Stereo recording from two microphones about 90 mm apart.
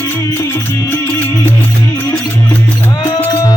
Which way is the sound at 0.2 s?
30° left (ahead or behind).